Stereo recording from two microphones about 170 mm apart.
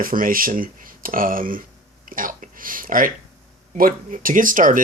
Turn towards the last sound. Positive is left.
turn(degrees=-50)  # may be behind; listen again after turning